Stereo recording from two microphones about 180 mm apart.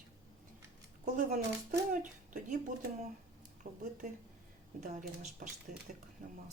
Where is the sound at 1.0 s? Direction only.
50° right (ahead or behind).